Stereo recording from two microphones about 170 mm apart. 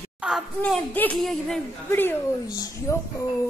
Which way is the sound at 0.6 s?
10° left (ahead or behind).